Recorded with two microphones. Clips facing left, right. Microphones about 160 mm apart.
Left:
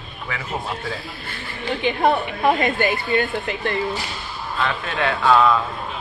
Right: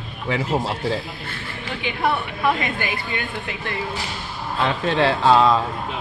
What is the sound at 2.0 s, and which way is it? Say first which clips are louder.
A woman's voice: left 2 dB; 45° left (ahead or behind).